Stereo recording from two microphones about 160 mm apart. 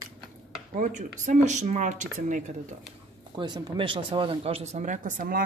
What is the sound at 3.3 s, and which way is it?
Speech, 25° right (ahead or behind).